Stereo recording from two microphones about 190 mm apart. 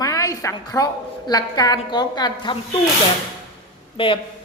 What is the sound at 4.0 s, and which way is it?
Speech, 30° left (ahead or behind).